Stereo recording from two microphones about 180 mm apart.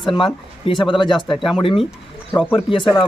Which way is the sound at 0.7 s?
30° left (ahead or behind).